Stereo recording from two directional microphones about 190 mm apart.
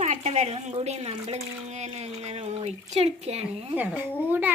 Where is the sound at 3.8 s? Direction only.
10° right (ahead or behind).